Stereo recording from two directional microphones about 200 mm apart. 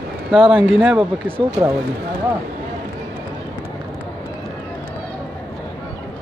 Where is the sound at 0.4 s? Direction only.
25° right (ahead or behind).